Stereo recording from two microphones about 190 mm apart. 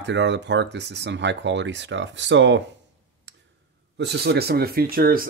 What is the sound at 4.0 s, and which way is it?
Speech, 60° right (ahead or behind).